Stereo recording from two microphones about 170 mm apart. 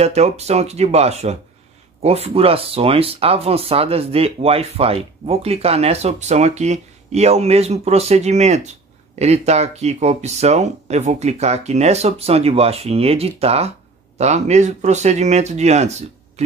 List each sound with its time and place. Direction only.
0.0 s speech: 40° right (ahead or behind)